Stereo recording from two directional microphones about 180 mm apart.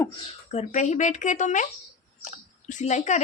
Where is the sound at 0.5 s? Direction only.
40° left (ahead or behind).